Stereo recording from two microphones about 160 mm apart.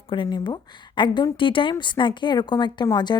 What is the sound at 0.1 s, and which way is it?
A woman's voice, 30° left (ahead or behind).